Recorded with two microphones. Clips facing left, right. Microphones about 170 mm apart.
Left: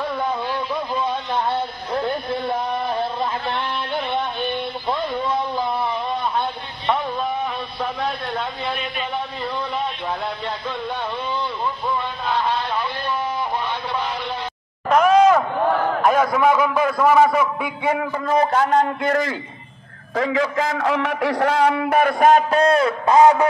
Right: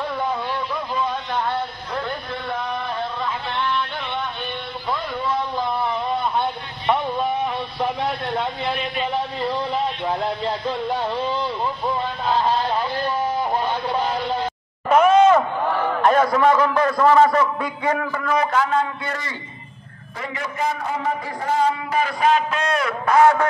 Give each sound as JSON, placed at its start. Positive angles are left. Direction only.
{"t": 2.0, "sound": "a sound", "side_deg": 35}
{"t": 7.8, "sound": "a sound", "side_deg": -20}
{"t": 9.1, "sound": "music", "side_deg": -30}
{"t": 12.3, "sound": "vehicle", "side_deg": -40}
{"t": 13.0, "sound": "music", "side_deg": -45}
{"t": 14.9, "sound": "a sound", "side_deg": -5}
{"t": 16.0, "sound": "a man's voice", "side_deg": 5}
{"t": 18.3, "sound": "a man's voice", "side_deg": 30}
{"t": 18.6, "sound": "a man's voice", "side_deg": 45}
{"t": 20.2, "sound": "a man's voice", "side_deg": 90}